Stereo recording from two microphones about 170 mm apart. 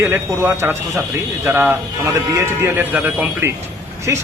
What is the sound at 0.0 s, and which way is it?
Speech, 15° right (ahead or behind).